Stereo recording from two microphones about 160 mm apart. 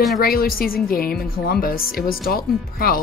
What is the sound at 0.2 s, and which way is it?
Speech, 70° left (ahead or behind).